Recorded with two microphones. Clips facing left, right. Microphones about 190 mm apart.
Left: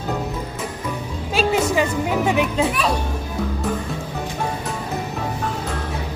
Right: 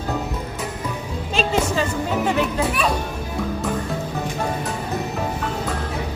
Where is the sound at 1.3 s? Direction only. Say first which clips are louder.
Left 2 dB; 10° left (ahead or behind).